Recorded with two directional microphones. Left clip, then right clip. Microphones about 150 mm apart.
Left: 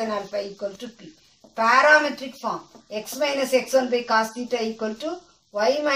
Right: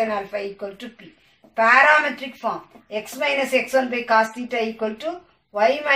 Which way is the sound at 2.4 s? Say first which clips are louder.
Right 3 dB; 35° left (ahead or behind).